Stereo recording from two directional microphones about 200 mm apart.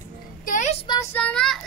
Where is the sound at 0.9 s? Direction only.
15° left (ahead or behind).